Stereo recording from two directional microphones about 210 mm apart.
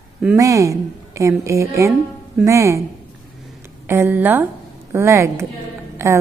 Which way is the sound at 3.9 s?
10° right (ahead or behind).